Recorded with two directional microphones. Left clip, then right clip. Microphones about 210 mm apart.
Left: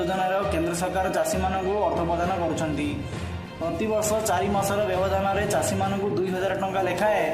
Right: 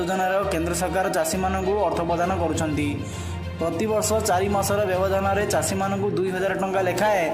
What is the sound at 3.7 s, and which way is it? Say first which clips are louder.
Speech: right 1 dB; 35° right (ahead or behind).